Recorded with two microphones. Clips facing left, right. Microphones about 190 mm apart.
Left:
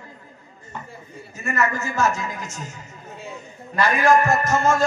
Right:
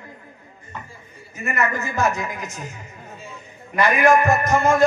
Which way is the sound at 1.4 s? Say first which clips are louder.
Even; 15° right (ahead or behind).